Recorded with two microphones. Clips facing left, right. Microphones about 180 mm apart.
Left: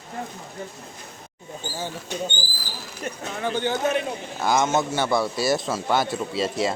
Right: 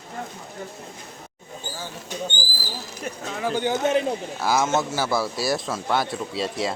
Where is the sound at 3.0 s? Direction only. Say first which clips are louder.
Even; 10° right (ahead or behind).